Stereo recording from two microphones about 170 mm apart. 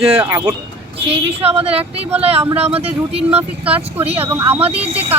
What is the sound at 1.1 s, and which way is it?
Speech, 35° right (ahead or behind).